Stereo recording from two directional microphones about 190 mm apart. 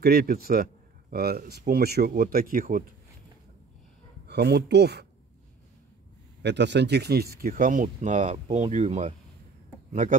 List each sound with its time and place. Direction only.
0.0 s speech: 55° right (ahead or behind)
4.3 s speech: 60° right (ahead or behind)
6.4 s speech: 65° right (ahead or behind); by 9.1 s 35° right (ahead or behind)